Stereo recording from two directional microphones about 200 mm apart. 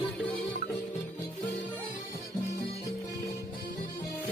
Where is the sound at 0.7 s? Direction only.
10° left (ahead or behind).